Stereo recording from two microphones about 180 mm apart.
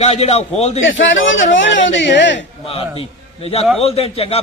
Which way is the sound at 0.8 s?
90° left.